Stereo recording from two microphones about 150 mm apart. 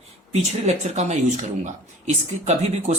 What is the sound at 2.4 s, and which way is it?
Speech, 50° right (ahead or behind).